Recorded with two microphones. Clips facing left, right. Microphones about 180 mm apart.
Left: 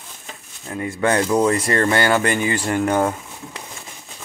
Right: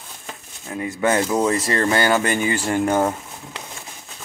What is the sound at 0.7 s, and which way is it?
Speech, 20° right (ahead or behind).